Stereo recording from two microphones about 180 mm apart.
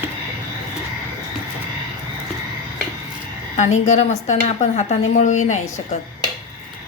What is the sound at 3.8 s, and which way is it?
A woman's voice, 40° left (ahead or behind).